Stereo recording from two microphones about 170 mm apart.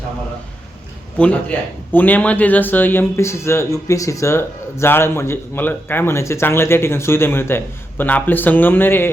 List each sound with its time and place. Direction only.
1.2 s a man's voice: 10° left (ahead or behind)